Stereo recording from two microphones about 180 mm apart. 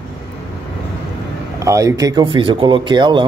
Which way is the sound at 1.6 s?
15° right (ahead or behind).